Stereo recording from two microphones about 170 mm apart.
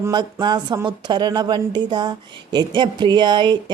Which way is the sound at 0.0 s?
25° right (ahead or behind).